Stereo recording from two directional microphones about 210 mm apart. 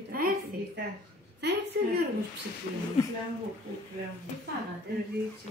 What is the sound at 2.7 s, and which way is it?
Speech, 40° left (ahead or behind).